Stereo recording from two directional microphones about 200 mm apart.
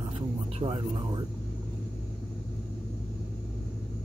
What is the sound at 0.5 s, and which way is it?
Speech, 25° right (ahead or behind).